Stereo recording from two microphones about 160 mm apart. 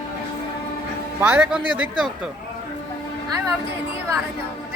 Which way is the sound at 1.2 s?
10° right (ahead or behind).